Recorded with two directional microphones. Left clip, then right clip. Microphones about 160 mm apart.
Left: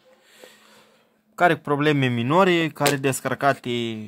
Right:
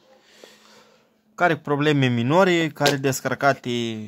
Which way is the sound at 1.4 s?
5° left (ahead or behind).